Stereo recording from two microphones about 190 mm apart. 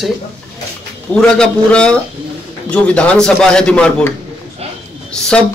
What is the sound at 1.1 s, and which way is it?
Speech, 5° left (ahead or behind).